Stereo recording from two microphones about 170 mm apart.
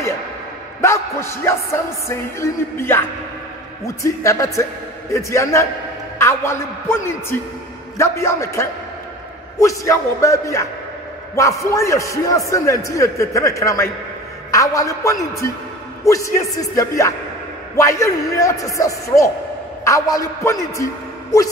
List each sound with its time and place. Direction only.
0.7 s a man's voice: 15° left (ahead or behind)